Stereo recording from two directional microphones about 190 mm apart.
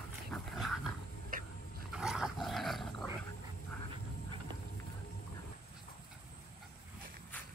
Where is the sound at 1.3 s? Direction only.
45° right (ahead or behind).